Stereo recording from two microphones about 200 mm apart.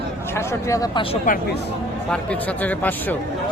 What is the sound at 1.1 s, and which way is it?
Speech, 40° left (ahead or behind).